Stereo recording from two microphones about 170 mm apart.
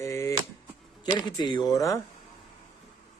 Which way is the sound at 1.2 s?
25° left (ahead or behind).